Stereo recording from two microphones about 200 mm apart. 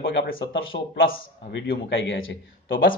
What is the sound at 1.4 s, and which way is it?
A man's voice, 60° left (ahead or behind).